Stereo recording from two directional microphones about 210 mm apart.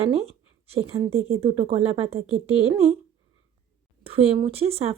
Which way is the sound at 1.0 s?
15° right (ahead or behind).